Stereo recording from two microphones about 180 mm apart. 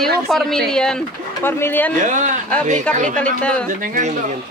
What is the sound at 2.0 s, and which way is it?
A man's voice, 45° right (ahead or behind).